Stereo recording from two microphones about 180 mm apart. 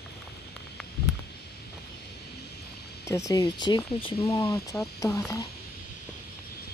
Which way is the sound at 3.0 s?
15° left (ahead or behind).